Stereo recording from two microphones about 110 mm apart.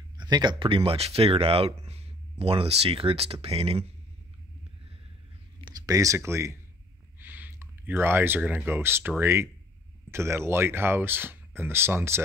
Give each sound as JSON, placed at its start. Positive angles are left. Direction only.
{"t": 0.2, "sound": "speech", "side_deg": -40}
{"t": 5.7, "sound": "speech", "side_deg": -35}